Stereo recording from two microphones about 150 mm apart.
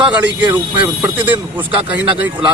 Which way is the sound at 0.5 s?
10° right (ahead or behind).